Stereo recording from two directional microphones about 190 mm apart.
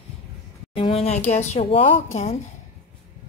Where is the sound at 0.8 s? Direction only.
30° left (ahead or behind).